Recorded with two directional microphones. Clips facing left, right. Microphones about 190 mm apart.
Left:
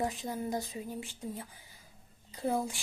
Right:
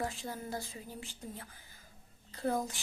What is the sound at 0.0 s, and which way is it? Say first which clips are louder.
Speech: left 4 dB; 15° left (ahead or behind).